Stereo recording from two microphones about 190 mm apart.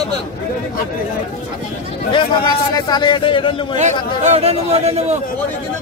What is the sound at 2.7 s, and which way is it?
Speech, 20° left (ahead or behind).